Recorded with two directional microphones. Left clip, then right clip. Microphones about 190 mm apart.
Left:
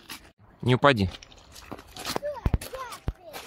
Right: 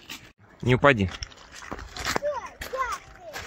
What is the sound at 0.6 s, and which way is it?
Speech, 15° left (ahead or behind).